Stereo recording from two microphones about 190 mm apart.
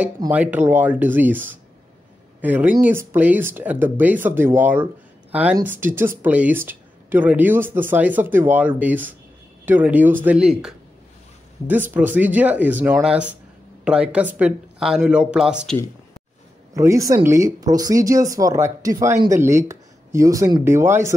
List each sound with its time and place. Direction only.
0.3 s speech: 10° right (ahead or behind)
16.7 s speech: 15° right (ahead or behind)